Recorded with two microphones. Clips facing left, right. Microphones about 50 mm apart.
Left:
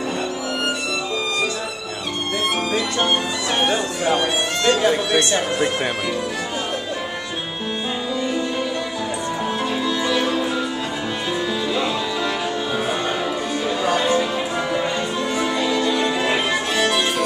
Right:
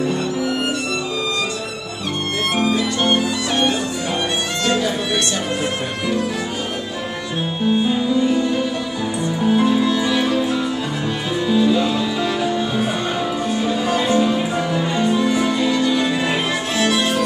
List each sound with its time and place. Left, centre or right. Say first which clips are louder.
3.1 s music: right 3 dB; centre
7.6 s music: right 9 dB; centre
9.4 s music: right 9 dB; centre
11.4 s music: right 9 dB; centre
13.7 s music: left 1 dB; centre
15.6 s music: right 2 dB; centre
15.9 s music: right 1 dB; centre